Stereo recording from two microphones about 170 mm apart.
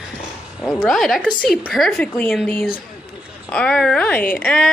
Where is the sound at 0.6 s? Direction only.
Centre (ahead or behind).